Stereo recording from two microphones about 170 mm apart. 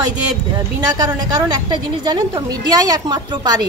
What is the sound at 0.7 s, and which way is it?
A woman's voice, 20° right (ahead or behind).